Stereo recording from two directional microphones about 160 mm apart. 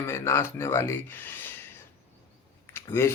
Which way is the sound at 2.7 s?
15° left (ahead or behind).